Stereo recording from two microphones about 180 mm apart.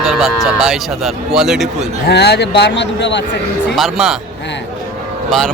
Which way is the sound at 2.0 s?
65° left (ahead or behind).